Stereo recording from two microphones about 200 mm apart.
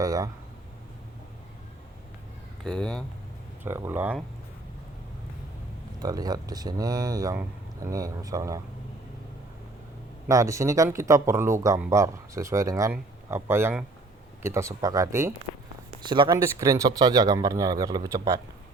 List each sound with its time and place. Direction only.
0.0 s a sound: 15° right (ahead or behind)
2.6 s speech: 5° left (ahead or behind)
3.6 s speech: 10° right (ahead or behind)
6.0 s speech: 20° right (ahead or behind)
10.2 s speech: 15° right (ahead or behind)